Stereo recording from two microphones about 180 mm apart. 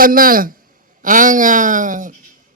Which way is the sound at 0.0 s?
50° right (ahead or behind).